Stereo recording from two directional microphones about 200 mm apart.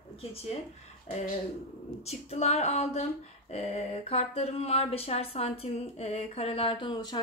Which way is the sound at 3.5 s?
30° left (ahead or behind).